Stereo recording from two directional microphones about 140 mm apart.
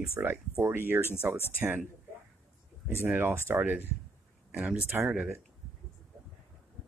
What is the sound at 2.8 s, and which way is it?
Speech, 15° right (ahead or behind).